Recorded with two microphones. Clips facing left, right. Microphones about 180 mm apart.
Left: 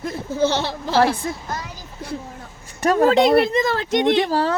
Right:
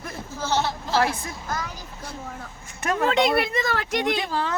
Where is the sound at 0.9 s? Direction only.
30° left (ahead or behind).